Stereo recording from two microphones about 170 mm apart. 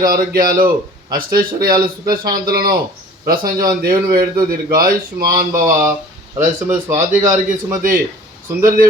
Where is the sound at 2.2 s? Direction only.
25° right (ahead or behind).